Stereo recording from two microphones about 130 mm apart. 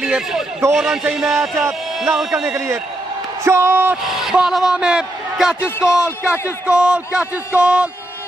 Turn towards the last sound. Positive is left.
turn(degrees=-10)  # may be behind; listen again after turning